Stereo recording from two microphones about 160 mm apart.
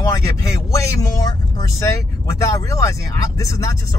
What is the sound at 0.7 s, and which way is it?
Speech, 20° left (ahead or behind).